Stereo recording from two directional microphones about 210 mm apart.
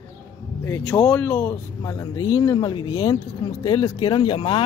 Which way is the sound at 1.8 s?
20° left (ahead or behind).